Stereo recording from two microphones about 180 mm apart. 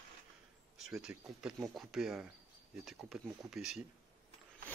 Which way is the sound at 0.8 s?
5° right (ahead or behind).